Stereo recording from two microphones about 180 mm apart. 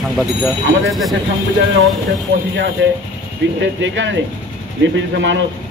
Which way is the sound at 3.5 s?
90° right.